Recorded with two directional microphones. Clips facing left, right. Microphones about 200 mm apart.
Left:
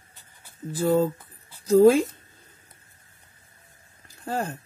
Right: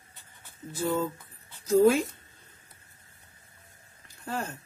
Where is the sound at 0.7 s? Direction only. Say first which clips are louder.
Left 7 dB; 35° left (ahead or behind).